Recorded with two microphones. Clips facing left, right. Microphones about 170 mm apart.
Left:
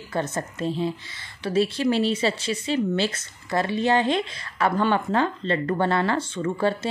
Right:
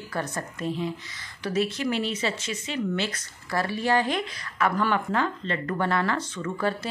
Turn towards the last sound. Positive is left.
turn(degrees=30)  # may be behind; listen again after turning